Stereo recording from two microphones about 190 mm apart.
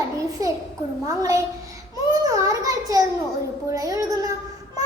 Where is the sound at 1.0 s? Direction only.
15° right (ahead or behind).